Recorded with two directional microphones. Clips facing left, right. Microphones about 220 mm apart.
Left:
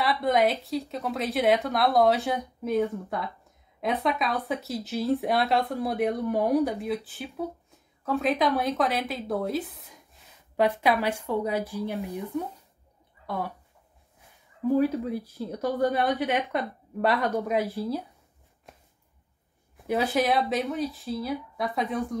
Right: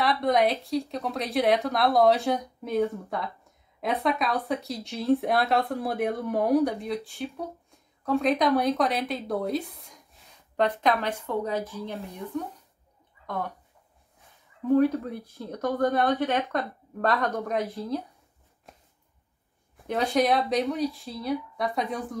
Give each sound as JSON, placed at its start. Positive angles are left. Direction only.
{"t": 0.0, "sound": "speech", "side_deg": 0}
{"t": 14.7, "sound": "speech", "side_deg": 5}
{"t": 16.0, "sound": "speech", "side_deg": 15}
{"t": 17.6, "sound": "speech", "side_deg": 0}
{"t": 19.9, "sound": "speech", "side_deg": 5}